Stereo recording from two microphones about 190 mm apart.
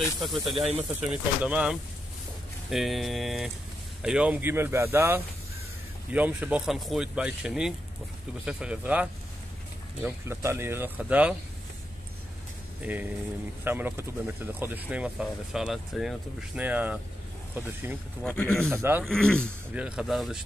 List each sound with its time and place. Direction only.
0.2 s speech: centre (ahead or behind)
0.7 s speech: 30° right (ahead or behind)
1.4 s speech: 5° right (ahead or behind)
12.8 s speech: 10° right (ahead or behind)
18.2 s speech: 5° left (ahead or behind)
18.7 s speech: 10° right (ahead or behind)
19.0 s speech: 5° left (ahead or behind)
19.4 s speech: 5° right (ahead or behind)